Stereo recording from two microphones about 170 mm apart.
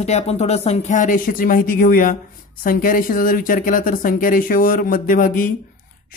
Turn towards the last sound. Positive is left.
turn(degrees=55)  # may be behind; listen again after turning